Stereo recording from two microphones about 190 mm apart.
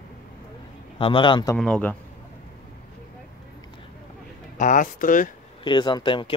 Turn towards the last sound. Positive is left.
turn(degrees=25)  # may be behind; listen again after turning